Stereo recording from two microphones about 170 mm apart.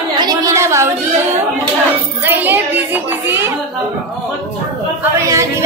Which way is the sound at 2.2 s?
10° right (ahead or behind).